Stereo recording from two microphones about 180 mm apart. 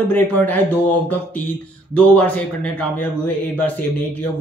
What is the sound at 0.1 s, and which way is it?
Speech, 10° left (ahead or behind).